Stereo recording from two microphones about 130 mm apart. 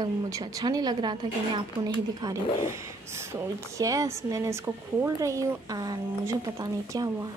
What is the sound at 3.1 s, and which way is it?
A woman's voice, 20° right (ahead or behind).